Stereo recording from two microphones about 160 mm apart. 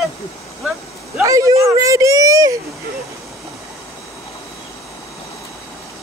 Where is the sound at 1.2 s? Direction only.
20° right (ahead or behind).